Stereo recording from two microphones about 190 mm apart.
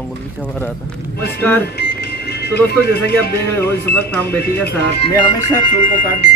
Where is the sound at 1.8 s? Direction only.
60° left (ahead or behind).